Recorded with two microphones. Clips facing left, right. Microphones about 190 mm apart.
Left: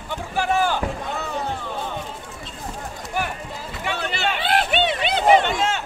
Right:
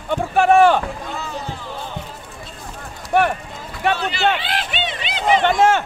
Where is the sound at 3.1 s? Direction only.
60° right (ahead or behind).